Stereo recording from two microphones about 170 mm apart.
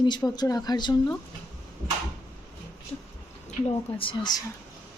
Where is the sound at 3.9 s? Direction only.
30° left (ahead or behind).